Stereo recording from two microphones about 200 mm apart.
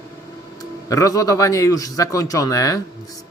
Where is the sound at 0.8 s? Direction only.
15° left (ahead or behind).